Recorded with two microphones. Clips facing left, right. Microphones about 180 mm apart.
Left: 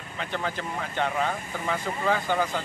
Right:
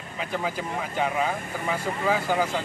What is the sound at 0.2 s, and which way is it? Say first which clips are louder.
Speech: right 2 dB; 5° right (ahead or behind).